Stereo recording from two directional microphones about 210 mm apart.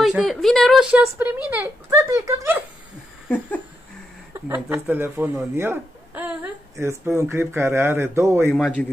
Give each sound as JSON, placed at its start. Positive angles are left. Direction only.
{"t": 0.0, "sound": "a woman's voice", "side_deg": 0}
{"t": 4.3, "sound": "speech", "side_deg": -10}
{"t": 8.5, "sound": "a woman's voice", "side_deg": 5}